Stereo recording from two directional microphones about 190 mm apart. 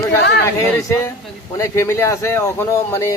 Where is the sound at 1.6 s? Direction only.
15° left (ahead or behind).